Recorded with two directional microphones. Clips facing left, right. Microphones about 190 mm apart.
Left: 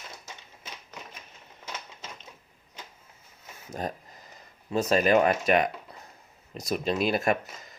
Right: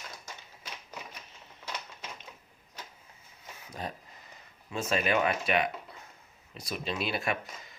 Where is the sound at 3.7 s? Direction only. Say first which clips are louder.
Left 6 dB; 45° left (ahead or behind).